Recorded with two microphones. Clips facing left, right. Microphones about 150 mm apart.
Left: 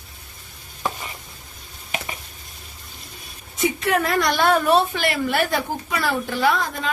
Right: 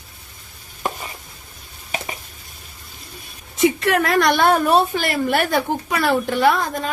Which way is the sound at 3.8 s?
75° right (ahead or behind).